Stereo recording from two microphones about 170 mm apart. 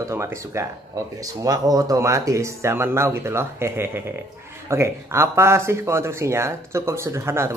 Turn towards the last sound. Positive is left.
turn(degrees=-15)  # may be behind; listen again after turning